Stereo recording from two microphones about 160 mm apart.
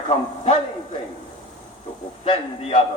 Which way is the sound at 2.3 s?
35° left (ahead or behind).